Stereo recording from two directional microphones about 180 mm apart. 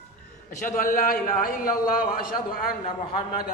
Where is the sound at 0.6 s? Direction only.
50° left (ahead or behind).